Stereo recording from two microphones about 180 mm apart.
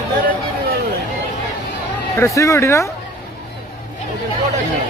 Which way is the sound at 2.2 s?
15° left (ahead or behind).